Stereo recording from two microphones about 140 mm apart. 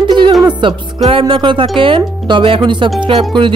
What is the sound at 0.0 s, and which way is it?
Music, 35° right (ahead or behind).